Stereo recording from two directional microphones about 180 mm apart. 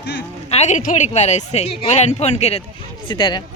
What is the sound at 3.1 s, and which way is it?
Speech, 25° left (ahead or behind).